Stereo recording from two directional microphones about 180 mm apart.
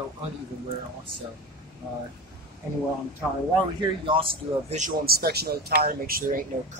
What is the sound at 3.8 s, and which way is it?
A man's voice, 30° right (ahead or behind).